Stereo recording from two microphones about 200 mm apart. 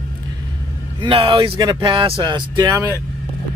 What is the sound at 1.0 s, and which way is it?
Speech, 25° right (ahead or behind).